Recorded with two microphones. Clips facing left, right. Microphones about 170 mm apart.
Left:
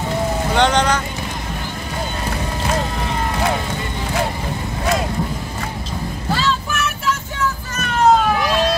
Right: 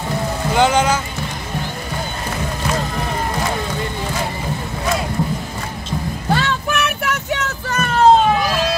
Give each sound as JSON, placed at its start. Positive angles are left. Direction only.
{"t": 0.6, "sound": "speech", "side_deg": -5}
{"t": 6.3, "sound": "music", "side_deg": -60}
{"t": 8.0, "sound": "a sound", "side_deg": -30}